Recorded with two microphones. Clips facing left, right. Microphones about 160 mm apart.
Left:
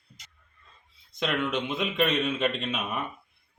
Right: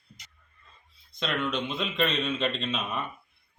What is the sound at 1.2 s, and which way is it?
A man's voice, 15° left (ahead or behind).